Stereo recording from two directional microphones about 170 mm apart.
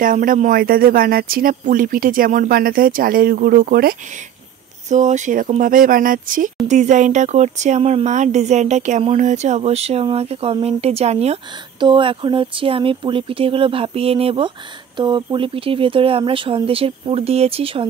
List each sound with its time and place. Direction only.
0.0 s speech: 55° right (ahead or behind)
4.8 s speech: 45° right (ahead or behind)